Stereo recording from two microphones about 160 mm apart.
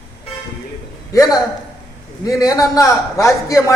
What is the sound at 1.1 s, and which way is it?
A man's voice, 20° left (ahead or behind).